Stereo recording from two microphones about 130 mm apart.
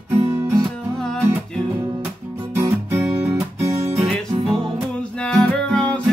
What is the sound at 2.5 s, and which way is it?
Guitar, 20° right (ahead or behind).